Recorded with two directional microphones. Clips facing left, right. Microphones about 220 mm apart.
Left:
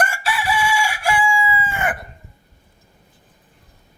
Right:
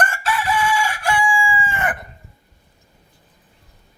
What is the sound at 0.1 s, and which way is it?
Chicken, 10° left (ahead or behind).